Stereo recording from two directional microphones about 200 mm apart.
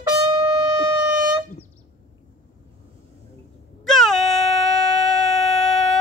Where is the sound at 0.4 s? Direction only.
20° right (ahead or behind).